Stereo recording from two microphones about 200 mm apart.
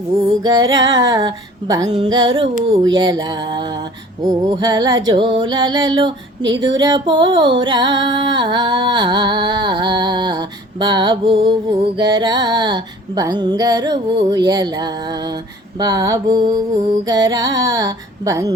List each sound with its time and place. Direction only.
0.4 s music: 20° right (ahead or behind)